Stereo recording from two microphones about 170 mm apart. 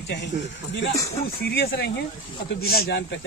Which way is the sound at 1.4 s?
70° left (ahead or behind).